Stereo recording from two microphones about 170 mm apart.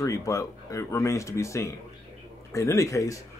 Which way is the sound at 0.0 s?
20° left (ahead or behind).